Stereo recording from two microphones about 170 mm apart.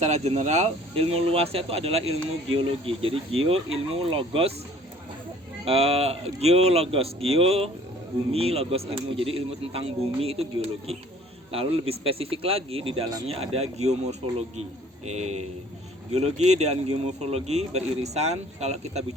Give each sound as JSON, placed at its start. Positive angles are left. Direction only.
{"t": 0.0, "sound": "speech", "side_deg": -40}
{"t": 5.6, "sound": "speech", "side_deg": -35}